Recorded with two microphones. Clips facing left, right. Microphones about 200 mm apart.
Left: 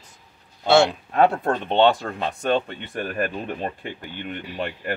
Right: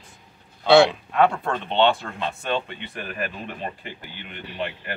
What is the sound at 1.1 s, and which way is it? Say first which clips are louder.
Speech: left 5 dB; 45° left (ahead or behind).